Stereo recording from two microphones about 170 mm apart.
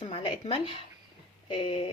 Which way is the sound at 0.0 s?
30° left (ahead or behind).